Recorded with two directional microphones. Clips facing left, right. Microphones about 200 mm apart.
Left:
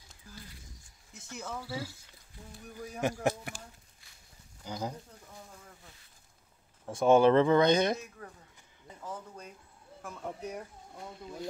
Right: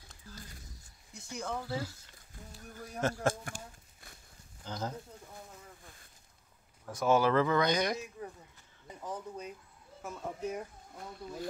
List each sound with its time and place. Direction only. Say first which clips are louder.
1.1 s speech: right 3 dB; centre (ahead or behind)
3.0 s a man's voice: left 1 dB; 15° left (ahead or behind)
4.6 s speech: left 1 dB; 15° left (ahead or behind)
6.9 s speech: left 5 dB; 25° left (ahead or behind)
9.0 s speech: right 2 dB; 15° right (ahead or behind)
10.0 s speech: right 2 dB; centre (ahead or behind)